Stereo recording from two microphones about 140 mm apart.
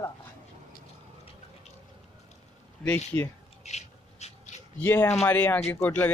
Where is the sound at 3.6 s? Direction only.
55° left (ahead or behind).